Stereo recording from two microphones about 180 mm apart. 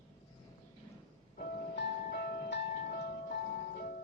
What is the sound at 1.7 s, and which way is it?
Music, 65° left (ahead or behind).